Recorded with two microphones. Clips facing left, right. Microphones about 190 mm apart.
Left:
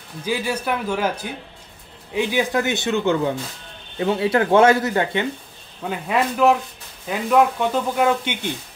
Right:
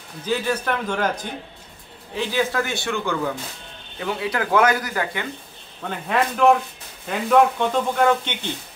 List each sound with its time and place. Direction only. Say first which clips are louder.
0.2 s speech: even; 10° left (ahead or behind); by 5.2 s 25° left (ahead or behind)
5.9 s speech: left 1 dB; 5° left (ahead or behind)